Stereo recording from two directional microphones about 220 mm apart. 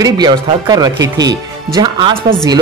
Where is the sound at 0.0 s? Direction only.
20° right (ahead or behind).